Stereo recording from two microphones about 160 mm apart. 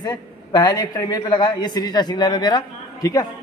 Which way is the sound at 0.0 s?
25° left (ahead or behind).